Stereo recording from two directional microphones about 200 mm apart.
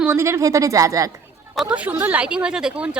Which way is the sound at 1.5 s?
5° right (ahead or behind).